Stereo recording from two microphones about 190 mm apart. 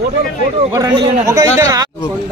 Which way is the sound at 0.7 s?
20° right (ahead or behind).